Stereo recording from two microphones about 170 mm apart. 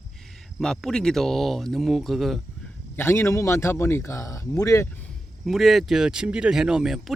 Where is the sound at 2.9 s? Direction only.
15° left (ahead or behind).